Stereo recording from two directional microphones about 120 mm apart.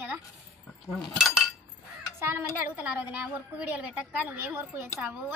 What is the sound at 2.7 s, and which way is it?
A woman's voice, 15° right (ahead or behind).